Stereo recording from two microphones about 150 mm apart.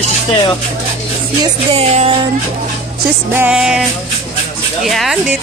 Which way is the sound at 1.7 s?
45° right (ahead or behind).